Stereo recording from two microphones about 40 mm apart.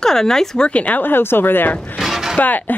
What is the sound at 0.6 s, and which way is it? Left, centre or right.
Speech, left.